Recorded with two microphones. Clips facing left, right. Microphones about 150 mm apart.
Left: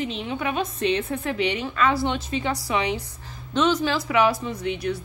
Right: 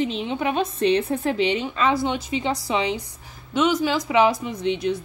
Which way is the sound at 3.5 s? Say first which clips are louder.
Right 1 dB; 10° right (ahead or behind).